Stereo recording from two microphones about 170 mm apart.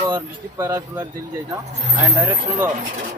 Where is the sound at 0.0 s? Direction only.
15° right (ahead or behind).